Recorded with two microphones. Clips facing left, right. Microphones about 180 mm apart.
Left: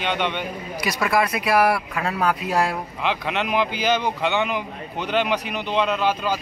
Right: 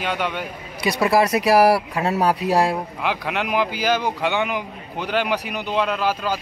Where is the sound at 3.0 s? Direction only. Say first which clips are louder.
Left 1 dB; 10° right (ahead or behind).